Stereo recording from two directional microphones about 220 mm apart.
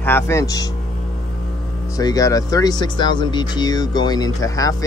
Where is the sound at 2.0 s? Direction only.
15° left (ahead or behind).